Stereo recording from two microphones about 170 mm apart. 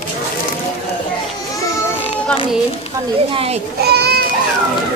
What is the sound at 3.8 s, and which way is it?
Speech, 70° right (ahead or behind).